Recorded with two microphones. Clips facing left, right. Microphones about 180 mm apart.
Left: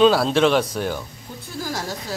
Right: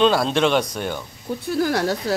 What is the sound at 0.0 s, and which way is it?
Speech, centre (ahead or behind).